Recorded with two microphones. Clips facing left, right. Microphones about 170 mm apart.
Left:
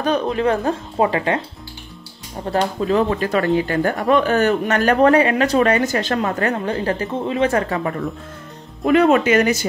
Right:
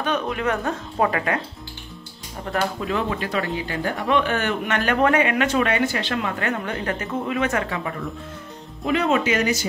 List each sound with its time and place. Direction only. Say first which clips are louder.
0.0 s speech: left 5 dB; 35° left (ahead or behind)
2.4 s speech: left 5 dB; 30° left (ahead or behind)
8.8 s speech: left 7 dB; 55° left (ahead or behind)